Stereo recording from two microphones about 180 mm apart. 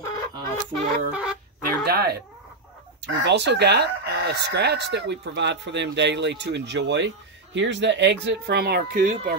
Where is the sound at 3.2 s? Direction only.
70° right (ahead or behind); by 9.1 s 55° right (ahead or behind).